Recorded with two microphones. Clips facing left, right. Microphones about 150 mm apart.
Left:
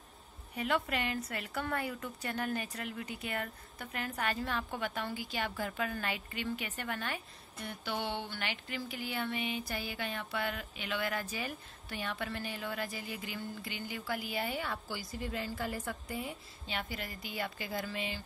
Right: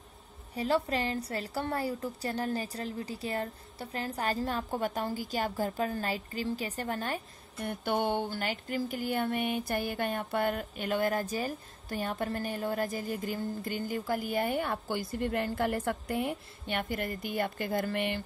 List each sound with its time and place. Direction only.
0.6 s a woman's voice: 30° right (ahead or behind)
7.6 s speech: 55° right (ahead or behind)